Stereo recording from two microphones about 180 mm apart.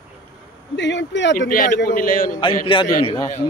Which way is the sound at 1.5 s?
50° left (ahead or behind).